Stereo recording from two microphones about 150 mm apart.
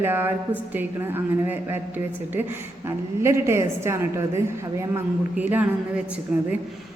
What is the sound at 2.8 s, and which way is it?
A woman's voice, 20° right (ahead or behind).